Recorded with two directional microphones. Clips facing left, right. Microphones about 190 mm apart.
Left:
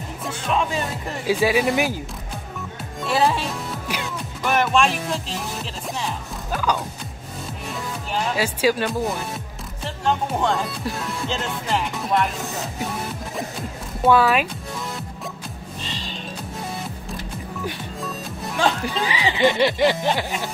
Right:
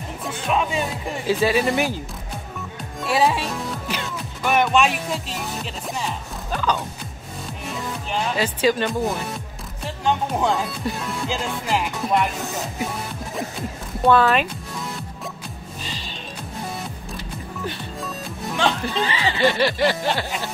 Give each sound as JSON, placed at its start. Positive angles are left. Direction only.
{"t": 0.5, "sound": "speech", "side_deg": -5}
{"t": 1.2, "sound": "speech", "side_deg": 10}
{"t": 3.0, "sound": "speech", "side_deg": 0}
{"t": 14.0, "sound": "speech", "side_deg": 5}
{"t": 18.6, "sound": "speech", "side_deg": 10}